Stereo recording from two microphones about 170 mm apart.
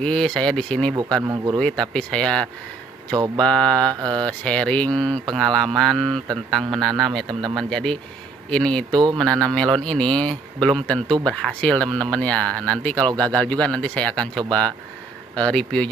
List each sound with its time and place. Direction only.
0.0 s speech: 5° left (ahead or behind)
0.9 s speech: 20° right (ahead or behind)
1.6 s speech: 5° left (ahead or behind)
3.8 s speech: 25° right (ahead or behind)
4.3 s speech: 5° left (ahead or behind)
8.9 s speech: 25° right (ahead or behind)
9.2 s speech: centre (ahead or behind)